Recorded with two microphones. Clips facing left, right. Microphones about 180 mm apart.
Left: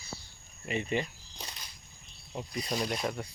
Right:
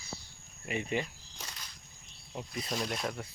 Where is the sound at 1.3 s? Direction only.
15° left (ahead or behind).